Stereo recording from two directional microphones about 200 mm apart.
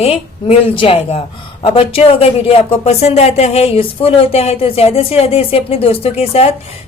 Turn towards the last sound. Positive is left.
turn(degrees=30)  # may be behind; listen again after turning